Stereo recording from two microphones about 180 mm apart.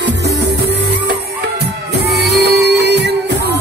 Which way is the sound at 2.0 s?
65° right (ahead or behind).